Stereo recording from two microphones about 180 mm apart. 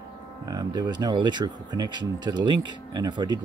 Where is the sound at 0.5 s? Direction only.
20° right (ahead or behind).